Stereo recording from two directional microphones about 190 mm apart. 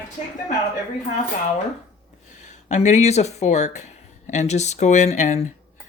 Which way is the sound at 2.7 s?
35° left (ahead or behind).